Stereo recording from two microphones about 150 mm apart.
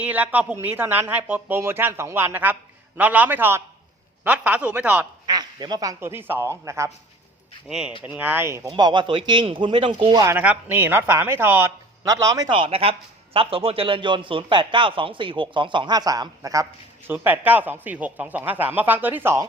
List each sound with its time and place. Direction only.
0.0 s speech: 10° right (ahead or behind)
5.2 s speech: 30° right (ahead or behind)
7.7 s speech: 5° right (ahead or behind)
8.7 s a man's voice: 30° right (ahead or behind)
10.2 s speech: 15° right (ahead or behind)
12.5 s a man's voice: 35° right (ahead or behind); by 19.5 s 15° right (ahead or behind)